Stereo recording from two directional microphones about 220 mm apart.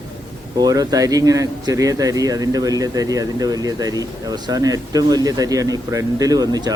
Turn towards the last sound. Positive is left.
turn(degrees=-15)  # may be behind; listen again after turning